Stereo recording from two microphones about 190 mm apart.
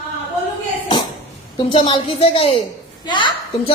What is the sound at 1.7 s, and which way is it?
A woman's voice, 30° left (ahead or behind).